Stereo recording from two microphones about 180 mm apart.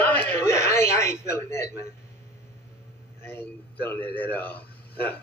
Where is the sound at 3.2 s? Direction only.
10° left (ahead or behind).